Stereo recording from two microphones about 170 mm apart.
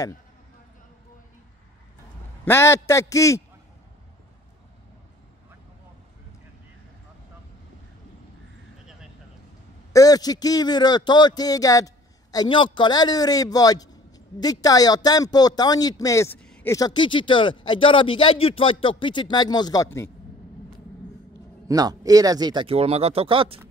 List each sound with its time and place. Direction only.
2.4 s a man's voice: 15° left (ahead or behind)
9.9 s speech: 20° left (ahead or behind); by 16.7 s 5° left (ahead or behind)
16.7 s speech: 25° left (ahead or behind)
21.6 s speech: 20° right (ahead or behind)